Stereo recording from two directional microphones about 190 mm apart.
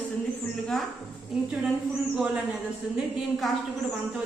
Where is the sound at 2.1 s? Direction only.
5° right (ahead or behind).